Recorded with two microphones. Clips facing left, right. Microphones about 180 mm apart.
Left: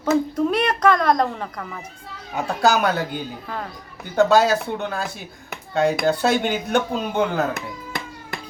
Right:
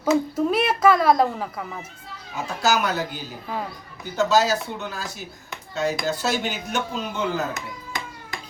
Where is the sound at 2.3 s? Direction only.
60° left (ahead or behind).